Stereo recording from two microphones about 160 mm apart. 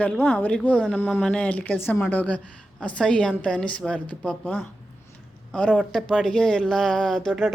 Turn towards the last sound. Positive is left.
turn(degrees=0)  # may be behind; listen again after turning